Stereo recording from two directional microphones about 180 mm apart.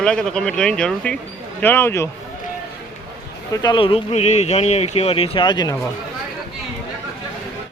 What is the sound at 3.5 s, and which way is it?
Speech, 20° left (ahead or behind).